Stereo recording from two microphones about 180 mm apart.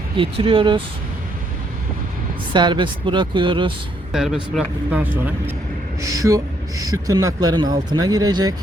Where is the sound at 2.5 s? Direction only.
25° right (ahead or behind).